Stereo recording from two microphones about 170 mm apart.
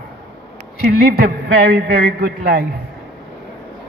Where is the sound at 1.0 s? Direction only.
65° right (ahead or behind).